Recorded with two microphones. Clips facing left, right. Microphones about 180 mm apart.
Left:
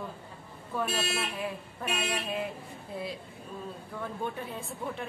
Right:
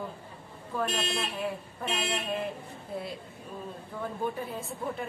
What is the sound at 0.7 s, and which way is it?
Speech, 5° left (ahead or behind).